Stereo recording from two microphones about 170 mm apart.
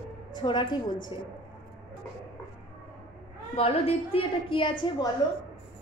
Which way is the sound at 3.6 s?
35° left (ahead or behind).